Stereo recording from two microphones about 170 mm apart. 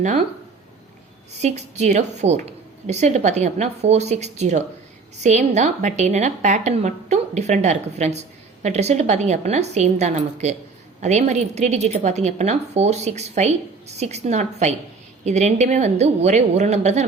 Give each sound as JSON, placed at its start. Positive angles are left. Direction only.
{"t": 1.4, "sound": "a woman's voice", "side_deg": -40}